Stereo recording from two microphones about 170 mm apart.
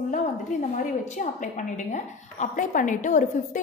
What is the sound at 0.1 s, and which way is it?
A woman's voice, 45° left (ahead or behind).